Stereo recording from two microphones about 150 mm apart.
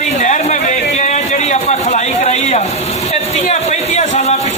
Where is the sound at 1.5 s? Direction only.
50° left (ahead or behind).